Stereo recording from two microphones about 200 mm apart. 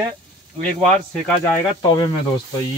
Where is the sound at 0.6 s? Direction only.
5° left (ahead or behind).